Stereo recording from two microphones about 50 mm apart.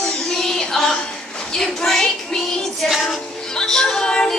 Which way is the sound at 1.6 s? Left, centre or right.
Centre.